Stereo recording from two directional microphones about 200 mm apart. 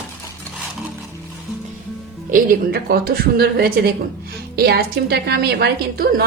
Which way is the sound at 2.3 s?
50° right (ahead or behind).